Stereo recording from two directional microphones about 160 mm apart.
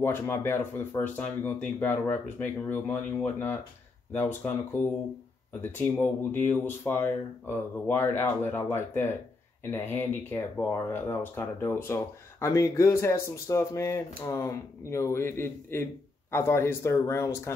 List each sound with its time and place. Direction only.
0.0 s speech: 15° left (ahead or behind)